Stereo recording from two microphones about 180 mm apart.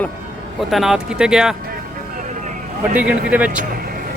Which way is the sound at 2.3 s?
45° right (ahead or behind).